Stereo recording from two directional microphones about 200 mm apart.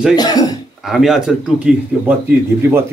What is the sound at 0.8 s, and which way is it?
A man's voice, centre (ahead or behind).